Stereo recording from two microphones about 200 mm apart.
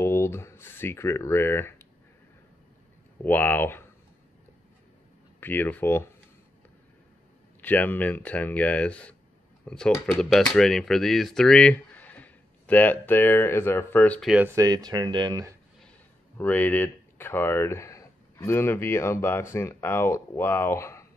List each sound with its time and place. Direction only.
0.0 s speech: 15° left (ahead or behind)
3.3 s speech: 10° left (ahead or behind)
5.4 s speech: 10° left (ahead or behind)
7.6 s speech: 10° left (ahead or behind)
14.3 s speech: 10° right (ahead or behind)
16.3 s speech: 10° left (ahead or behind)